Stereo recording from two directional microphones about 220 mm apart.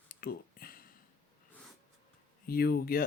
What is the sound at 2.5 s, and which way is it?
Speech, 45° left (ahead or behind).